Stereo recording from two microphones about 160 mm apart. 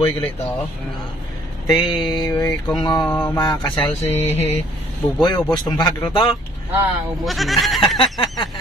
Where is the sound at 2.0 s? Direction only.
25° left (ahead or behind).